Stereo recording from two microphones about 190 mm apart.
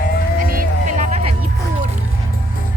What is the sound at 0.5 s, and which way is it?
Music, 40° right (ahead or behind).